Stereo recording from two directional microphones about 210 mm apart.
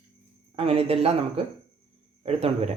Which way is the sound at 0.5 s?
25° right (ahead or behind).